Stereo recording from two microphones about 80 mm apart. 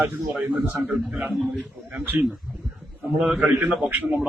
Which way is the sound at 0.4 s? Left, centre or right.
Right.